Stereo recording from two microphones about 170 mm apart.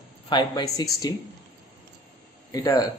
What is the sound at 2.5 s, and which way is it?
Speech, 20° left (ahead or behind).